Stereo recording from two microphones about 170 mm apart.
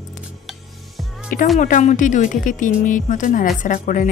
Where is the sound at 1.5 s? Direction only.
45° left (ahead or behind).